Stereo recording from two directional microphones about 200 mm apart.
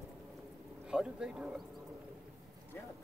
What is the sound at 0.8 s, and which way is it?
Speech, 5° right (ahead or behind).